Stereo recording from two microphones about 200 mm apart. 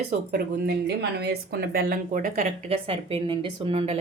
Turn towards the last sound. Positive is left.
turn(degrees=-30)  # may be behind; listen again after turning